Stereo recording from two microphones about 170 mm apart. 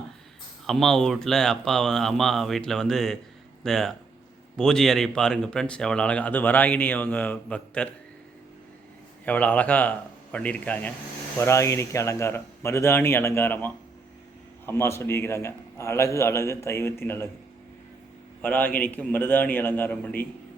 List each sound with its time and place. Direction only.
0.7 s speech: centre (ahead or behind)
9.2 s speech: 10° left (ahead or behind)
18.4 s speech: 10° left (ahead or behind)